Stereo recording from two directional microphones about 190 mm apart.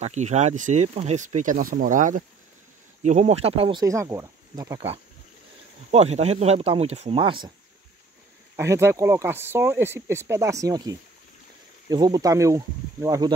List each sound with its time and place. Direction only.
0.0 s speech: 35° right (ahead or behind)
3.8 s speech: 15° right (ahead or behind)
5.9 s speech: 35° right (ahead or behind)
8.5 s speech: 15° right (ahead or behind)